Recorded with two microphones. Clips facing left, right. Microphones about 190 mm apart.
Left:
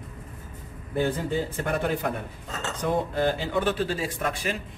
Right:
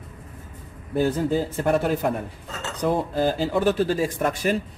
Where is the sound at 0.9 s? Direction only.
40° right (ahead or behind).